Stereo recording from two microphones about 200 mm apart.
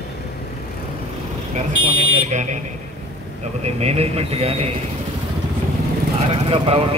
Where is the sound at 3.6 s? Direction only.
30° right (ahead or behind).